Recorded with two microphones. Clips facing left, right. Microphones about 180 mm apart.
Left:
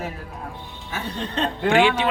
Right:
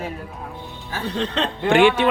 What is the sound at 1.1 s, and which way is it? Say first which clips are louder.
Chuckle: right 3 dB; 90° right.